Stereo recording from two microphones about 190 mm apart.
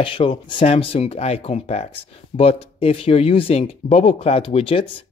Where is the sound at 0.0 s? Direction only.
25° left (ahead or behind).